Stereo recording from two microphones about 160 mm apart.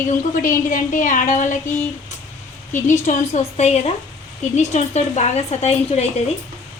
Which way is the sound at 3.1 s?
50° left (ahead or behind).